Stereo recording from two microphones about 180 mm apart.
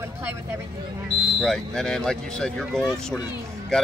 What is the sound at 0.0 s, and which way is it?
Speech, 15° right (ahead or behind).